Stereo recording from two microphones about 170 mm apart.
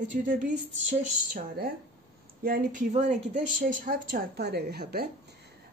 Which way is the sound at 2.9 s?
45° right (ahead or behind).